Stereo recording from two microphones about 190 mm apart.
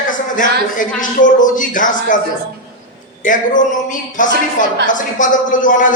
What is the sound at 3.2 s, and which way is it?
A man's voice, 45° left (ahead or behind).